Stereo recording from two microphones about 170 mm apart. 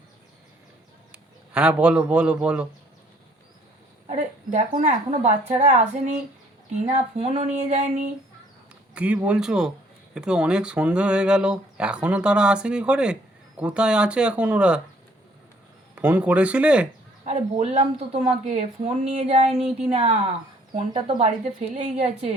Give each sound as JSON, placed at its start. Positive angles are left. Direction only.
{"t": 1.1, "sound": "a man's voice", "side_deg": -5}
{"t": 4.1, "sound": "a woman's voice", "side_deg": -45}
{"t": 9.0, "sound": "speech", "side_deg": -5}
{"t": 16.0, "sound": "speech", "side_deg": -10}
{"t": 17.2, "sound": "speech", "side_deg": -40}